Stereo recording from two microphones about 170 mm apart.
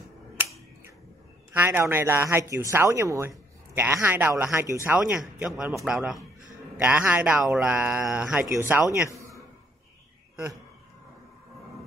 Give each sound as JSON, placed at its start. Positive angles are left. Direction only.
{"t": 1.5, "sound": "a man's voice", "side_deg": -10}